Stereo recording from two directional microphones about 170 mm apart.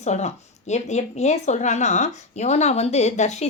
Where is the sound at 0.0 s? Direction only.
40° left (ahead or behind).